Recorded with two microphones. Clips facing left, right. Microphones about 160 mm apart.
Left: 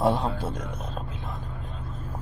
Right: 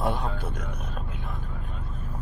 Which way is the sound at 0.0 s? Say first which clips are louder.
Left 5 dB; 30° left (ahead or behind).